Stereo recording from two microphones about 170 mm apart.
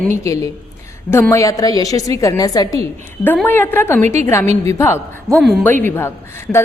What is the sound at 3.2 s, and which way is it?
A woman's voice, 10° left (ahead or behind).